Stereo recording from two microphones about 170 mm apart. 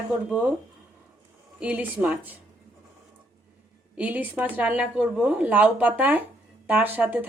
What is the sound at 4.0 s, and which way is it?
A woman's voice, 10° right (ahead or behind).